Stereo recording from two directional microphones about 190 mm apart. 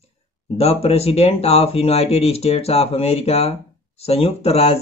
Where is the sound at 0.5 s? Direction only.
35° left (ahead or behind).